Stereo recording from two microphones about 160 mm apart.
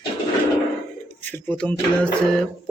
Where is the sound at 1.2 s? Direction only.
10° left (ahead or behind).